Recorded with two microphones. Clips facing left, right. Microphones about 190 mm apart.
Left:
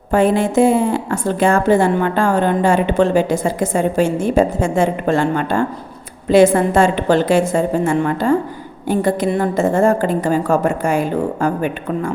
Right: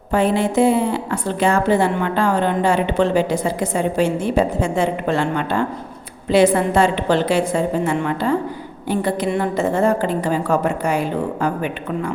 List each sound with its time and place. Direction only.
0.1 s a woman's voice: 50° left (ahead or behind)